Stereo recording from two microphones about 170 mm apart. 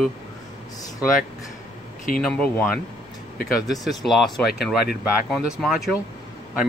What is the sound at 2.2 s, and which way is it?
Speech, 5° left (ahead or behind).